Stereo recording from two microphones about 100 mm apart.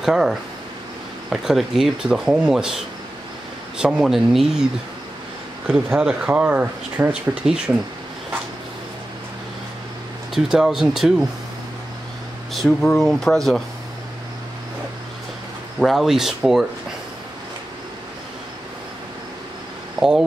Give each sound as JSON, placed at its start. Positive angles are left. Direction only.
{"t": 0.0, "sound": "speech", "side_deg": -5}
{"t": 5.9, "sound": "speech", "side_deg": -10}
{"t": 10.3, "sound": "speech", "side_deg": -5}
{"t": 12.5, "sound": "speech", "side_deg": 5}
{"t": 15.8, "sound": "speech", "side_deg": 0}
{"t": 20.0, "sound": "speech", "side_deg": -5}